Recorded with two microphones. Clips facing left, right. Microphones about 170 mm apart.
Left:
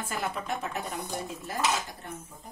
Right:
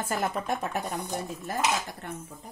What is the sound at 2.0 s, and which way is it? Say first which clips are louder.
Speech: right 3 dB; 65° right (ahead or behind).